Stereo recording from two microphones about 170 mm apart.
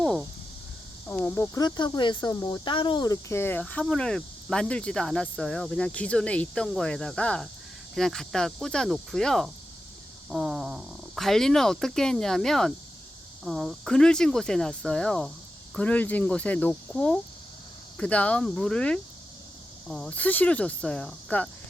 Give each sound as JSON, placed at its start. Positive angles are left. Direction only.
{"t": 1.1, "sound": "speech", "side_deg": 20}